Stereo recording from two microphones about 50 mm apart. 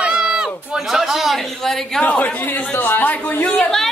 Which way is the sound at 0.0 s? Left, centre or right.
Centre.